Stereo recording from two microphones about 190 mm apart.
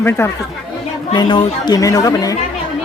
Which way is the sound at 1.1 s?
25° left (ahead or behind).